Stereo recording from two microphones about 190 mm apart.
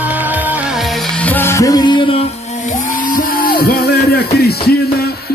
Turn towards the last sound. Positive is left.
turn(degrees=55)  # may be behind; listen again after turning